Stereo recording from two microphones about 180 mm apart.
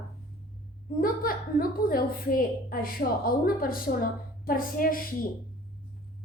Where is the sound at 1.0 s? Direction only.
55° left (ahead or behind).